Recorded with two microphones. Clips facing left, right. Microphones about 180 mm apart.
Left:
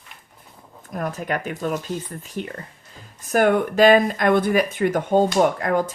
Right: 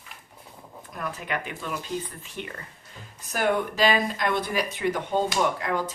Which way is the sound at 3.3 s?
55° left (ahead or behind).